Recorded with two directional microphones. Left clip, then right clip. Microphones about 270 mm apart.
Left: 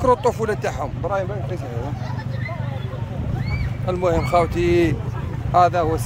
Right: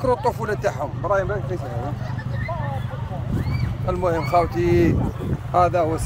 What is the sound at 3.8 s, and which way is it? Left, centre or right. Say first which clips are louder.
Speech: left 2 dB; centre.